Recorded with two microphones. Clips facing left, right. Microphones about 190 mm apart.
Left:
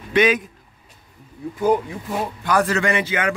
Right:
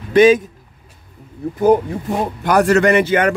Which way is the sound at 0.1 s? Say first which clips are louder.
Right 8 dB; 30° right (ahead or behind).